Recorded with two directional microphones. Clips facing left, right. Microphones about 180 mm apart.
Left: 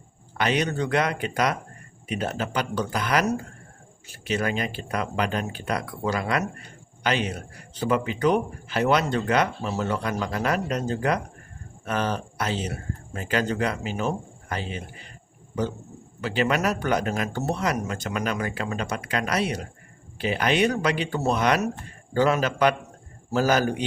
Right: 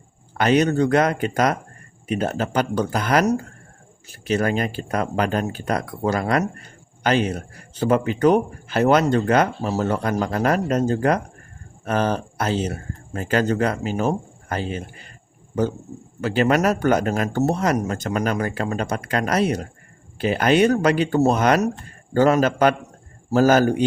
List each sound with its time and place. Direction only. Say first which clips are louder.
0.3 s speech: right 7 dB; 45° right (ahead or behind)
16.2 s speech: right 5 dB; 45° right (ahead or behind)